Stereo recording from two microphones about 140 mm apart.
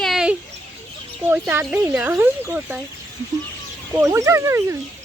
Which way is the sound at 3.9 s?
20° right (ahead or behind).